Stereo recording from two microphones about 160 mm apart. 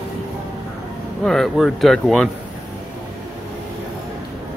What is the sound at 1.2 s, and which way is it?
Speech, 5° left (ahead or behind).